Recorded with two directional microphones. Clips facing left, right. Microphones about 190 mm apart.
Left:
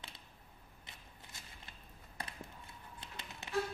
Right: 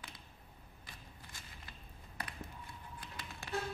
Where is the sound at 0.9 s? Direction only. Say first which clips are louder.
Right 2 dB; 20° left (ahead or behind).